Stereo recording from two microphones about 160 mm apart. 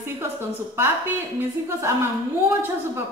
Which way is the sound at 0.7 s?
15° right (ahead or behind).